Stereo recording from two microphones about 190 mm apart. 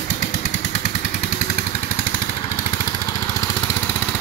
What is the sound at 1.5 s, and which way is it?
Vehicle, 35° left (ahead or behind).